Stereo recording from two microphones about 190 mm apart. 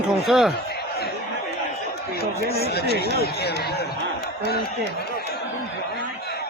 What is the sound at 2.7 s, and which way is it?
Speech, 55° left (ahead or behind).